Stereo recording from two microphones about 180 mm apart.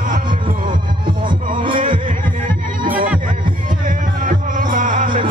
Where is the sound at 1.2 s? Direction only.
30° right (ahead or behind).